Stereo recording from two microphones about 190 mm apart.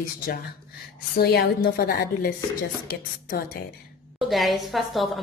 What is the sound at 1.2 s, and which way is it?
Speech, 55° left (ahead or behind).